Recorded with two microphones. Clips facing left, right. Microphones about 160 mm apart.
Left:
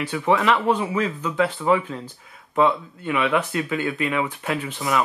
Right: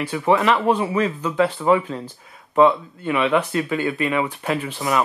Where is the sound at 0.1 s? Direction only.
20° right (ahead or behind).